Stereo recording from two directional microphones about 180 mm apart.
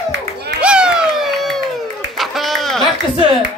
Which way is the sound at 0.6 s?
5° right (ahead or behind).